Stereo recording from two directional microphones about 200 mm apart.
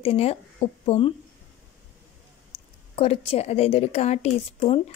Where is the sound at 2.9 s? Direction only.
30° left (ahead or behind).